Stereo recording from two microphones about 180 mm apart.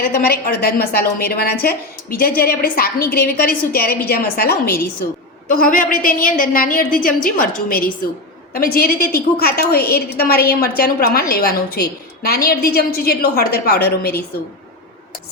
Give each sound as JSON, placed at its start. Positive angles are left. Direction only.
{"t": 0.0, "sound": "a woman's voice", "side_deg": 55}